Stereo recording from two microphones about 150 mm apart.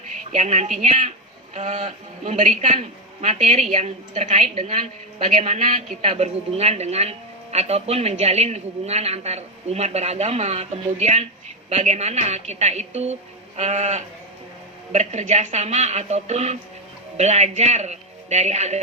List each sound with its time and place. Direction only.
0.1 s a woman's voice: 50° right (ahead or behind)